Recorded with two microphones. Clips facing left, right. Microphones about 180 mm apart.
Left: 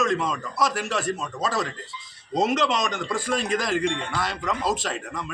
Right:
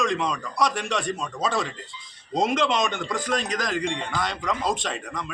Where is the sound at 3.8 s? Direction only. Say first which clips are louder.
Left 2 dB; 5° right (ahead or behind).